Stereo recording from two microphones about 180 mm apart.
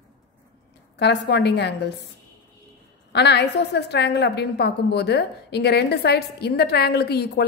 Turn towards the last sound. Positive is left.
turn(degrees=65)  # may be behind; listen again after turning